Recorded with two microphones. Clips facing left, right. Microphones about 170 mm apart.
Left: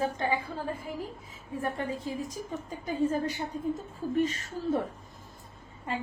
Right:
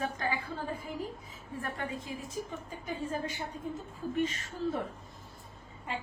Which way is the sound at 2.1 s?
35° left (ahead or behind).